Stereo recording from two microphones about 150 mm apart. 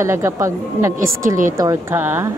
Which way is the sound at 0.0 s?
20° right (ahead or behind).